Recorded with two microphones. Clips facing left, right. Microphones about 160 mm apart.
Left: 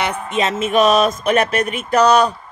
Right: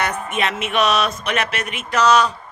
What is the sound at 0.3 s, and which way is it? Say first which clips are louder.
Speech: left 3 dB; 25° left (ahead or behind).